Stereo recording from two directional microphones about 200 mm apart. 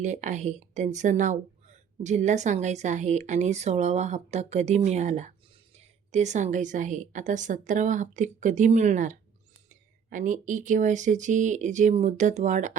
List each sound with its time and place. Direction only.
0.0 s a woman's voice: 35° right (ahead or behind)